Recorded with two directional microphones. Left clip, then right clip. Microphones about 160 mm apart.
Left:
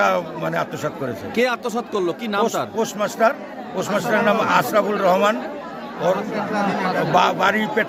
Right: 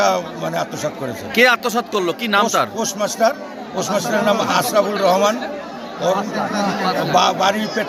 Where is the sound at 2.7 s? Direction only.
35° left (ahead or behind).